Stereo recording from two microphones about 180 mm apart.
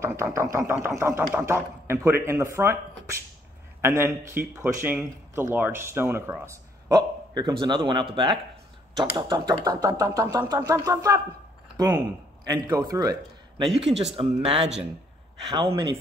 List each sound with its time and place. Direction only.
0.0 s speech: 15° right (ahead or behind)
3.8 s speech: 15° right (ahead or behind)
11.7 s a sound: 20° right (ahead or behind)
12.6 s speech: 15° right (ahead or behind)
14.1 s speech: 30° right (ahead or behind)